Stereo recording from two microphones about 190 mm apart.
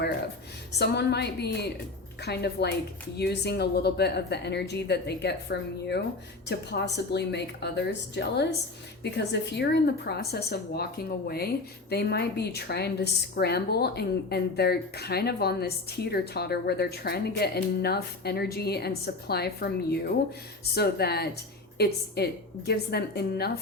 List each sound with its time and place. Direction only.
0.8 s speech: 60° left (ahead or behind)